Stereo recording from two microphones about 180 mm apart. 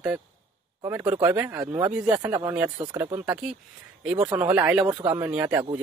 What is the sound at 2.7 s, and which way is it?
Speech, 25° right (ahead or behind).